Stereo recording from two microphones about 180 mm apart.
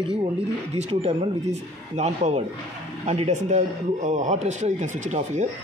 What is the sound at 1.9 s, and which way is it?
Speech, 40° right (ahead or behind).